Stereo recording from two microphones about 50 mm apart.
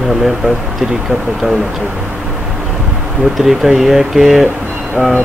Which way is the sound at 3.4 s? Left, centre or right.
Centre.